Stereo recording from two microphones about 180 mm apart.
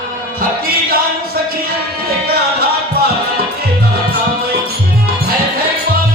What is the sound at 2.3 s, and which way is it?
Music, 60° right (ahead or behind).